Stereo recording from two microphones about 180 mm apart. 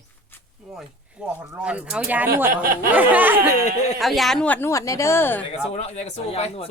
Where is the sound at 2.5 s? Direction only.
55° right (ahead or behind).